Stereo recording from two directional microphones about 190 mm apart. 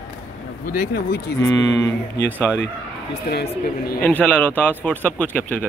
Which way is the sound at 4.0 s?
10° left (ahead or behind).